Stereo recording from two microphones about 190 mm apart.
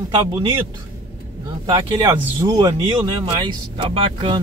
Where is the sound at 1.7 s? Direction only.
25° right (ahead or behind).